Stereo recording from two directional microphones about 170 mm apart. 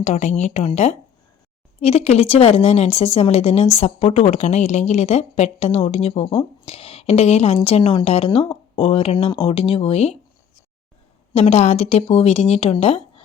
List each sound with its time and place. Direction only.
0.0 s a woman's voice: 40° left (ahead or behind)
11.3 s a woman's voice: 40° left (ahead or behind)